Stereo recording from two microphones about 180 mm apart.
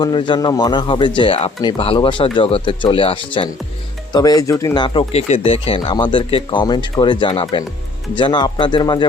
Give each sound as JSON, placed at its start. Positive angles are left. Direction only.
{"t": 0.0, "sound": "speech", "side_deg": 25}